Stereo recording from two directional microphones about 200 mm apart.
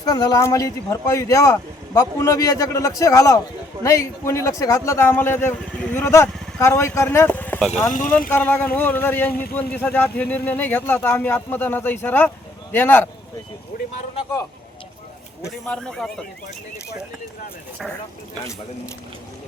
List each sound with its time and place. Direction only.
0.0 s a man's voice: 20° left (ahead or behind)
7.9 s speech: 40° left (ahead or behind)
8.3 s a man's voice: 10° left (ahead or behind)
15.6 s speech: 5° left (ahead or behind)